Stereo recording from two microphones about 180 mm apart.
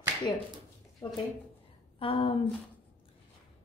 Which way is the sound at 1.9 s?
30° left (ahead or behind).